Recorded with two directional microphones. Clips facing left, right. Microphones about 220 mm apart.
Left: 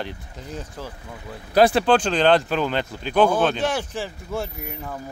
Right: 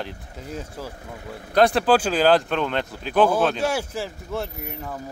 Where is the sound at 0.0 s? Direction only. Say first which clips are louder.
Left 1 dB; centre (ahead or behind).